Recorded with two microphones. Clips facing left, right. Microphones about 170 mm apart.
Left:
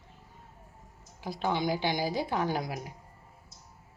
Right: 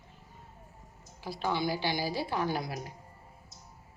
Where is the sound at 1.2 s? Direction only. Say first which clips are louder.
Left 1 dB; 20° left (ahead or behind).